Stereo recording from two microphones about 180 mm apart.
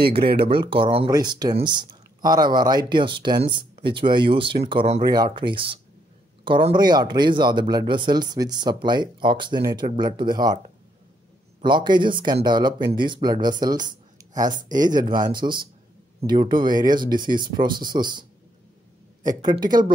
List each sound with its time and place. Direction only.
0.5 s speech: 30° right (ahead or behind)
11.6 s speech: 25° right (ahead or behind)
19.2 s speech: 25° right (ahead or behind)